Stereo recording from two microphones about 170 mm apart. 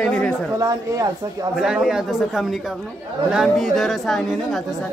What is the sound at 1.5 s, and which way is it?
Speech, 5° right (ahead or behind).